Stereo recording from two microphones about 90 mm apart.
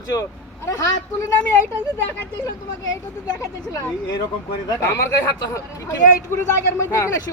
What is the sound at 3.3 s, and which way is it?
Speech, 40° left (ahead or behind).